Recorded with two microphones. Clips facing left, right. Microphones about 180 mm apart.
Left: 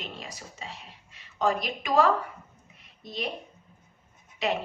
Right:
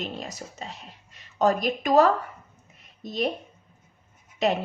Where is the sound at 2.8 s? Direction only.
45° right (ahead or behind).